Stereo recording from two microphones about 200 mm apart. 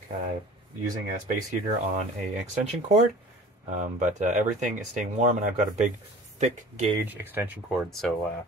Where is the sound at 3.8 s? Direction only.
40° right (ahead or behind).